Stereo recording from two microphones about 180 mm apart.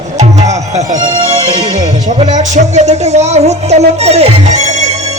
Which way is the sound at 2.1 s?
40° right (ahead or behind).